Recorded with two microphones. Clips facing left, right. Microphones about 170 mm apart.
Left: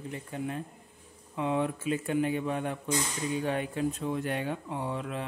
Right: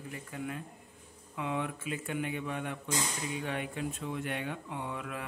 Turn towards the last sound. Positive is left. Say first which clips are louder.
# left 5 dB
turn(degrees=30)  # may be behind; listen again after turning